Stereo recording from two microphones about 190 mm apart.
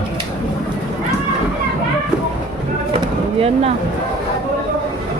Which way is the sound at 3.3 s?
30° right (ahead or behind).